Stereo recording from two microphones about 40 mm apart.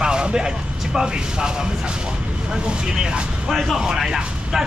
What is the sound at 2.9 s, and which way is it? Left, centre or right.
Speech, centre.